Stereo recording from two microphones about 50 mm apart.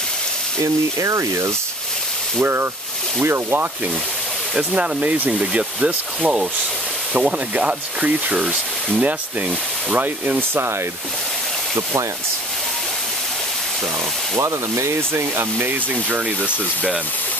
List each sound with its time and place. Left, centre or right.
0.6 s speech: right
2.4 s speech: right
4.6 s speech: right
9.9 s rub: right
14.4 s speech: right